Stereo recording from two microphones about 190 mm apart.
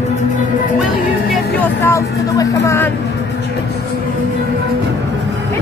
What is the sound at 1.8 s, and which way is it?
Speech, 15° left (ahead or behind).